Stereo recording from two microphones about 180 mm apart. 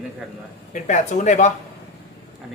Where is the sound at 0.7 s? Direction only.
40° left (ahead or behind).